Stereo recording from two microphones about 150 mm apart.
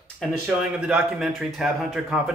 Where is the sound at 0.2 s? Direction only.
Centre (ahead or behind).